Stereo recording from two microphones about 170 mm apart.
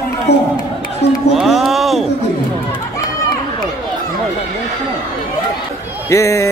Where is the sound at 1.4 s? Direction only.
Centre (ahead or behind).